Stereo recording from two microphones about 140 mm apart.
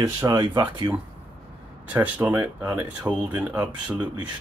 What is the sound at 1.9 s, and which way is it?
Speech, 15° right (ahead or behind).